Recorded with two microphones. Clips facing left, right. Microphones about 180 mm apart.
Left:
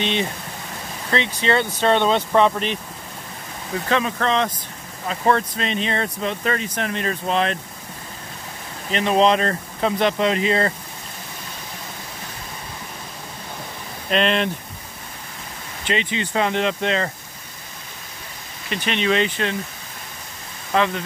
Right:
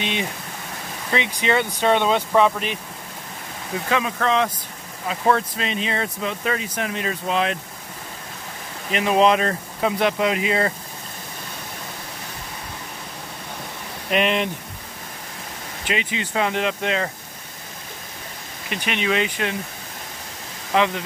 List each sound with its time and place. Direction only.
0.0 s speech: 10° right (ahead or behind)
3.9 s speech: 5° right (ahead or behind)
8.9 s speech: 5° right (ahead or behind)
14.1 s speech: 15° right (ahead or behind)
15.9 s speech: 5° right (ahead or behind)
18.7 s speech: 10° right (ahead or behind)
20.7 s speech: 15° right (ahead or behind)